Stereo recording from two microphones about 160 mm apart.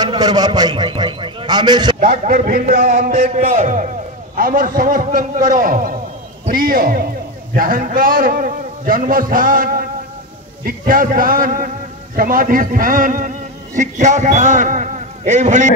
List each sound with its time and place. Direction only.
0.0 s a man's voice: 25° right (ahead or behind)
2.0 s a man's voice: 55° right (ahead or behind)